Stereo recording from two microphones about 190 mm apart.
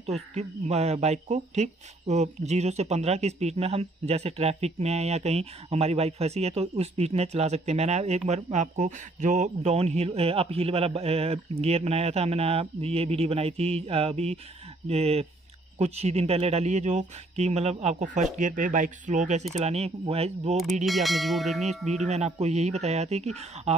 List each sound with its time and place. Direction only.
0.0 s speech: 35° right (ahead or behind)
20.8 s speech: centre (ahead or behind)
22.0 s speech: 35° right (ahead or behind)